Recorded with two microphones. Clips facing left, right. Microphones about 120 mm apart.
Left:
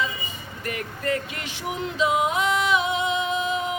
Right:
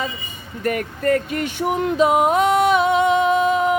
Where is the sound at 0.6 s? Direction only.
45° right (ahead or behind).